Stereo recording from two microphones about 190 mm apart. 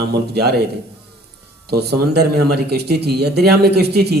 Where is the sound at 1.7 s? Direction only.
60° right (ahead or behind).